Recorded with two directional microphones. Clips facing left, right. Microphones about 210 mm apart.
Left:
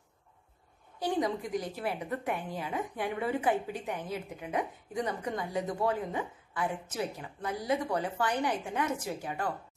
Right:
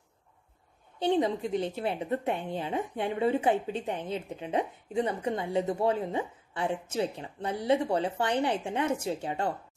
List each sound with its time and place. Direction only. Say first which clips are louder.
0.9 s a woman's voice: right 4 dB; 25° right (ahead or behind)